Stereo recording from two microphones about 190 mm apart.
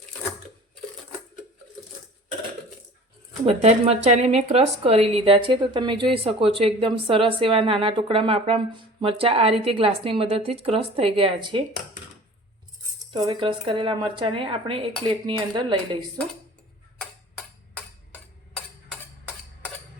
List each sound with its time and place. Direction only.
3.4 s speech: 35° right (ahead or behind)
13.1 s speech: 25° right (ahead or behind)
17.0 s tick-tock: 5° left (ahead or behind)